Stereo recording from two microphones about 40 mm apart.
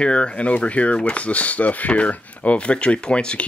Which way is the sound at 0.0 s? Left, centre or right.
Left.